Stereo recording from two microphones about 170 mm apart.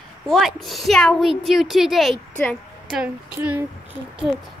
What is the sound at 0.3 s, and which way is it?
A woman's voice, centre (ahead or behind).